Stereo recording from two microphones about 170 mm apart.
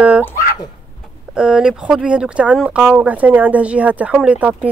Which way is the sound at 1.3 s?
5° right (ahead or behind).